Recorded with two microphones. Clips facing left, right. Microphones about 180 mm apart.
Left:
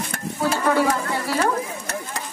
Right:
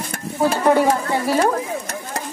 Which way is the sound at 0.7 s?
35° right (ahead or behind).